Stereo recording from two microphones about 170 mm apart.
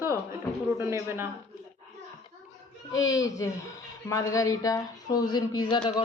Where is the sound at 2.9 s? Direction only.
20° left (ahead or behind).